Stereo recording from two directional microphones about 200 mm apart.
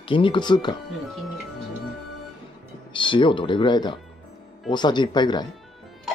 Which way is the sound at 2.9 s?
25° left (ahead or behind).